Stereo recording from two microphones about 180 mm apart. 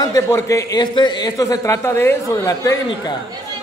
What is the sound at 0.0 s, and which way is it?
A man's voice, 20° left (ahead or behind).